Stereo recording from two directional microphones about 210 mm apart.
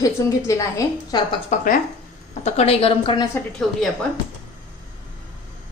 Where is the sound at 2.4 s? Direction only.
30° left (ahead or behind).